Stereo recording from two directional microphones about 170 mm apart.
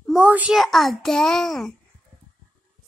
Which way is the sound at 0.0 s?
5° right (ahead or behind).